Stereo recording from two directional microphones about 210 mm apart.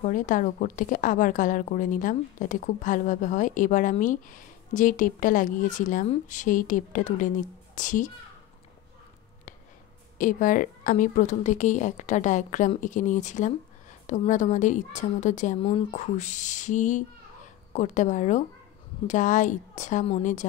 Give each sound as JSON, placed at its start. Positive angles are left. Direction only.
{"t": 0.0, "sound": "a woman's voice", "side_deg": 40}
{"t": 10.1, "sound": "a woman's voice", "side_deg": 40}